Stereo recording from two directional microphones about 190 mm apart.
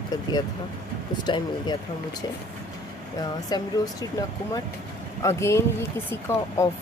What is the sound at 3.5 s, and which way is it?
Speech, 20° left (ahead or behind).